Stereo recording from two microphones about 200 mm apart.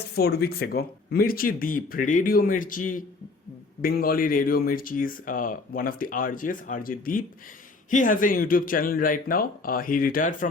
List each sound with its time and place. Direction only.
0.2 s speech: 50° left (ahead or behind)